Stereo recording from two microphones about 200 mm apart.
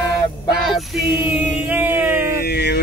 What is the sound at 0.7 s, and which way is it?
Music, 5° right (ahead or behind).